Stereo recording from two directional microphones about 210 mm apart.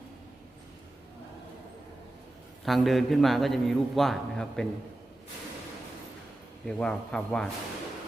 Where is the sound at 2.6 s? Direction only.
Centre (ahead or behind).